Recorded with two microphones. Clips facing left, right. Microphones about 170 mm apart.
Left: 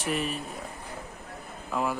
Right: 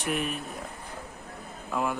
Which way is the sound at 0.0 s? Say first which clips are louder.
Even; centre (ahead or behind).